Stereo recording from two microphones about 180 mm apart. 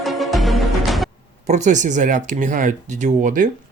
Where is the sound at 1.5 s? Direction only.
40° right (ahead or behind).